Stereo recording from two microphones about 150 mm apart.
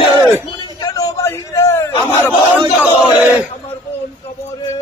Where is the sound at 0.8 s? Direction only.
25° left (ahead or behind).